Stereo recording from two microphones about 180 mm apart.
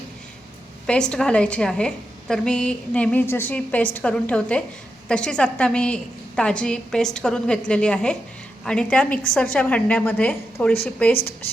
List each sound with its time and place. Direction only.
0.9 s a woman's voice: 5° left (ahead or behind)
11.1 s speech: 55° left (ahead or behind)